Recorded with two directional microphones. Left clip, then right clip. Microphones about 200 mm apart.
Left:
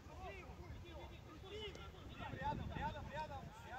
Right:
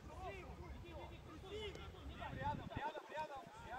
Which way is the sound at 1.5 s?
10° right (ahead or behind).